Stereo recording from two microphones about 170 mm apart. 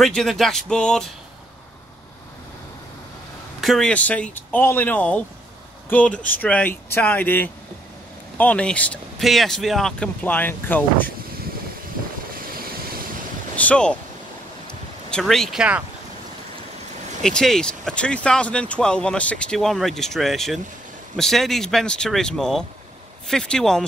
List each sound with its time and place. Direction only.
0.0 s speech: centre (ahead or behind)
3.6 s speech: 5° left (ahead or behind)
12.4 s vehicle: 60° right (ahead or behind)
13.6 s speech: 5° left (ahead or behind)
15.0 s speech: 5° left (ahead or behind)
17.2 s speech: 5° left (ahead or behind)